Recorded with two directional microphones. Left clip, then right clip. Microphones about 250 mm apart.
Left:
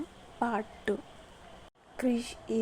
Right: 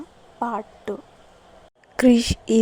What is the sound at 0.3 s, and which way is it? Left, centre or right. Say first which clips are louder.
Speech: right 5 dB; centre.